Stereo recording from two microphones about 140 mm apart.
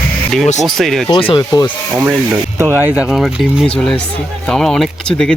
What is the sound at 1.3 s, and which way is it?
Speech, 30° left (ahead or behind).